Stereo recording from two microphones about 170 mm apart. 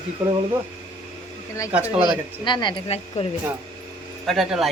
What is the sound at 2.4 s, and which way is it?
Speech, 25° left (ahead or behind).